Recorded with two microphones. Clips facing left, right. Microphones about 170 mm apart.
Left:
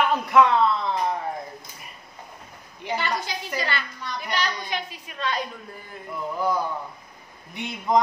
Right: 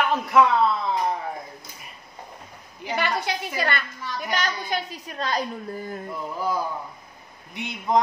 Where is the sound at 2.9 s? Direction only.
65° right (ahead or behind).